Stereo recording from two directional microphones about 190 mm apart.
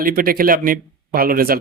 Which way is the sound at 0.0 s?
50° right (ahead or behind).